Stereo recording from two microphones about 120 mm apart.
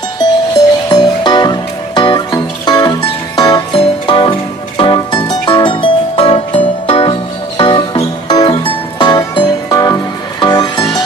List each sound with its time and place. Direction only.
0.2 s music: 35° left (ahead or behind); by 6.7 s 65° left (ahead or behind)
6.9 s music: 50° left (ahead or behind)